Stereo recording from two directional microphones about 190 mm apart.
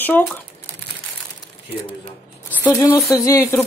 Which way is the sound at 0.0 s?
10° left (ahead or behind).